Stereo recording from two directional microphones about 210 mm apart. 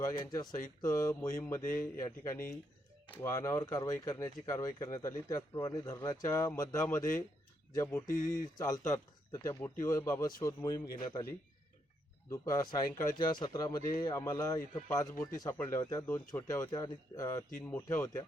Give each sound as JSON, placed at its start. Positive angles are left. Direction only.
{"t": 0.0, "sound": "speech", "side_deg": 15}
{"t": 8.0, "sound": "speech", "side_deg": 40}
{"t": 8.5, "sound": "speech", "side_deg": 15}